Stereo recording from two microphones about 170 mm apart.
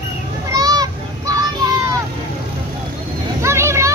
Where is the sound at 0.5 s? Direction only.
20° right (ahead or behind).